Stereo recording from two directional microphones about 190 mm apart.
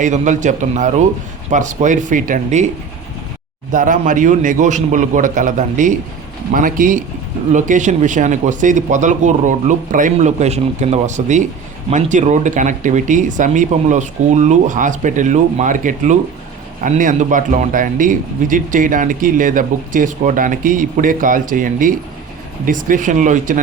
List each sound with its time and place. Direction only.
0.0 s speech: 40° right (ahead or behind)
3.7 s a man's voice: 45° right (ahead or behind)